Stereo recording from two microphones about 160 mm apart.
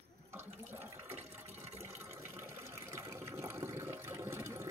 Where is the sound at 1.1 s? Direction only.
40° right (ahead or behind).